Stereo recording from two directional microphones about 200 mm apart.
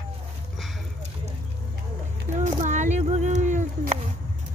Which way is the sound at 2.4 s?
35° right (ahead or behind).